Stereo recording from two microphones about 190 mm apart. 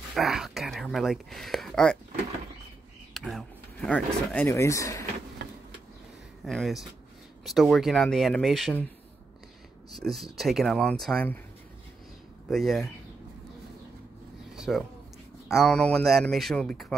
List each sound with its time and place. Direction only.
0.1 s speech: centre (ahead or behind)
3.2 s speech: centre (ahead or behind)
5.4 s a sound: 65° right (ahead or behind)
6.4 s a man's voice: centre (ahead or behind)
9.9 s a man's voice: centre (ahead or behind)
12.4 s a man's voice: centre (ahead or behind)
14.5 s a sound: centre (ahead or behind)
15.4 s a man's voice: centre (ahead or behind)